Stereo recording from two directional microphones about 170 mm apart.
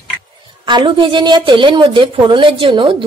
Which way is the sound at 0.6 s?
30° right (ahead or behind).